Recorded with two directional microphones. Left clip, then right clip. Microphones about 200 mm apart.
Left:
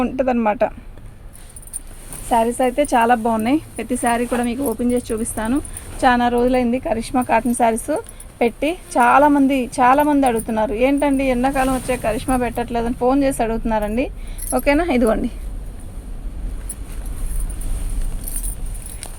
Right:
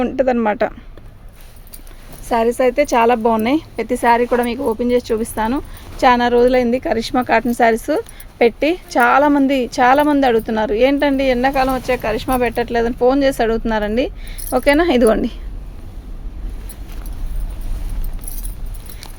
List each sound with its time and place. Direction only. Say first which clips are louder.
0.0 s speech: right 2 dB; 40° right (ahead or behind)
2.3 s a woman's voice: right 2 dB; 55° right (ahead or behind)